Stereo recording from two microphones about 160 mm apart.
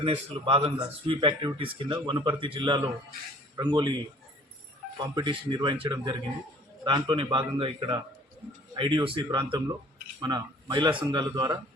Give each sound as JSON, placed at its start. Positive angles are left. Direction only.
{"t": 0.0, "sound": "speech", "side_deg": -35}
{"t": 5.1, "sound": "speech", "side_deg": -30}